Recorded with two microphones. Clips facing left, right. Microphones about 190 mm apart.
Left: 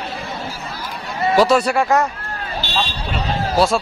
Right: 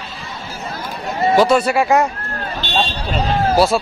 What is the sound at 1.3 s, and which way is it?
Speech, centre (ahead or behind).